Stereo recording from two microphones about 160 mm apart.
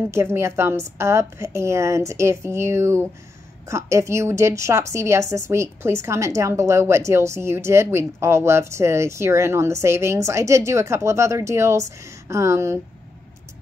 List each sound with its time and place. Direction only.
0.1 s a woman's voice: 15° right (ahead or behind)